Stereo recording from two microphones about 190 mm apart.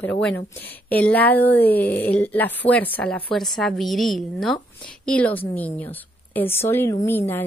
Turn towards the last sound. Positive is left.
turn(degrees=10)  # may be behind; listen again after turning